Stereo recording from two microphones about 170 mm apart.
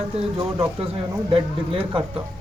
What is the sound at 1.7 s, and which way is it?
Speech, 30° right (ahead or behind).